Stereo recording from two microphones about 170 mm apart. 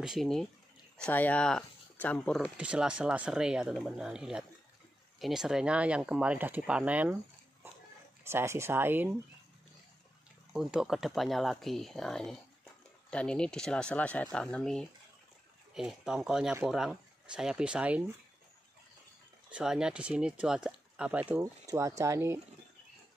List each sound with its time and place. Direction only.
0.0 s speech: centre (ahead or behind)
2.5 s speech: 5° right (ahead or behind)
8.2 s speech: 15° right (ahead or behind)
10.5 s speech: 5° right (ahead or behind)
19.5 s speech: 5° right (ahead or behind)
21.6 s speech: 20° right (ahead or behind)